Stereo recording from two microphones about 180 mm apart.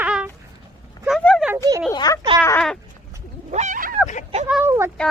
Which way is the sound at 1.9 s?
20° left (ahead or behind).